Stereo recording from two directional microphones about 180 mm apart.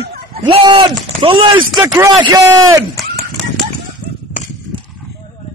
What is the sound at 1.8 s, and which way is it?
A man's voice, 15° right (ahead or behind).